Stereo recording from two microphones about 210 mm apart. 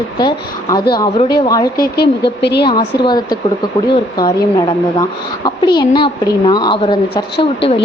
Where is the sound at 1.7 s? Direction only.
50° left (ahead or behind).